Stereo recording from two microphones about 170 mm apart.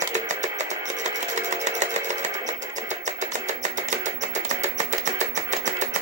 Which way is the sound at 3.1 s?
45° right (ahead or behind).